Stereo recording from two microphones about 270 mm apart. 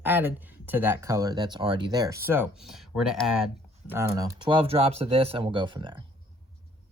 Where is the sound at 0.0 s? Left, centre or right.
Centre.